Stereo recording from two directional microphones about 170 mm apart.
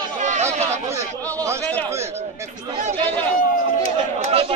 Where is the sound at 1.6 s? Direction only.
10° left (ahead or behind).